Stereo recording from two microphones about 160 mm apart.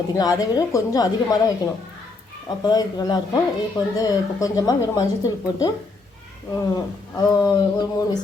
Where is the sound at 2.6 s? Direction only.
25° left (ahead or behind).